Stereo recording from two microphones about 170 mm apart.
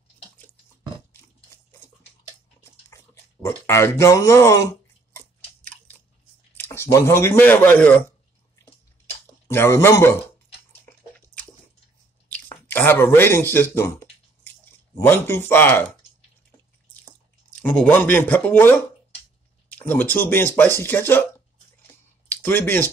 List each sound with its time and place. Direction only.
3.4 s speech: 15° left (ahead or behind)
5.1 s chewing: 10° left (ahead or behind)
6.5 s speech: 15° left (ahead or behind)
9.5 s speech: 15° left (ahead or behind)
12.3 s speech: 10° left (ahead or behind)
17.6 s speech: 5° left (ahead or behind)
22.3 s speech: 10° left (ahead or behind)